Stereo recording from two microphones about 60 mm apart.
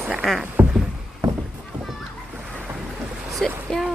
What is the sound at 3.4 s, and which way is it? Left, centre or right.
Speech, centre.